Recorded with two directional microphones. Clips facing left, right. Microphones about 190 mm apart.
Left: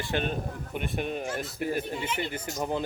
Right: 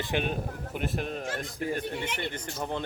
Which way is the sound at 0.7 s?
Centre (ahead or behind).